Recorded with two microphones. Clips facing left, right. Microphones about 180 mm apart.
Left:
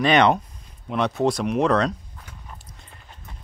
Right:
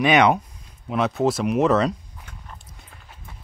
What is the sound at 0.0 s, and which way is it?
Speech, 5° right (ahead or behind).